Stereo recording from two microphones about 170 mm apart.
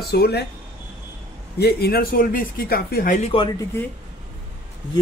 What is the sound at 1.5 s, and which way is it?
Speech, 70° left (ahead or behind).